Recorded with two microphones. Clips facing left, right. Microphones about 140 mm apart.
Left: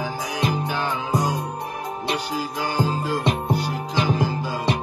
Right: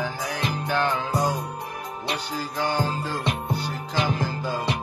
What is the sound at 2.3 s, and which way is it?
Music, 10° left (ahead or behind).